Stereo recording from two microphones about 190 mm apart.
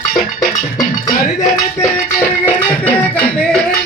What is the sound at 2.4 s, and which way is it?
Music, 10° left (ahead or behind).